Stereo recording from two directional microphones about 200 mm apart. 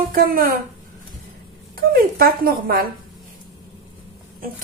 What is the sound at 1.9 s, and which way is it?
Speech, 50° right (ahead or behind).